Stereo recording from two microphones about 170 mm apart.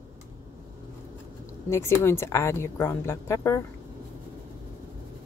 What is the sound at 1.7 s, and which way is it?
Speech, 15° left (ahead or behind).